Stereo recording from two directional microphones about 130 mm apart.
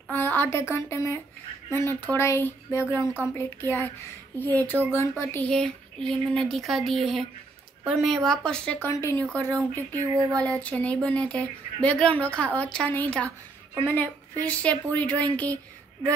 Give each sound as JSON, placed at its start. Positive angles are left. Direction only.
{"t": 0.1, "sound": "a woman's voice", "side_deg": 15}
{"t": 6.0, "sound": "a sound", "side_deg": 0}
{"t": 8.8, "sound": "speech", "side_deg": 20}
{"t": 9.5, "sound": "speech", "side_deg": -25}
{"t": 10.4, "sound": "speech", "side_deg": 10}